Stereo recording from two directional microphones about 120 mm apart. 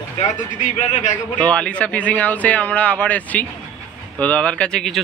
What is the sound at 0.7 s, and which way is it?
Speech, 90° left.